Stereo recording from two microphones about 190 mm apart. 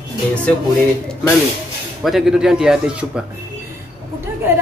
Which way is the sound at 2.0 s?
Centre (ahead or behind).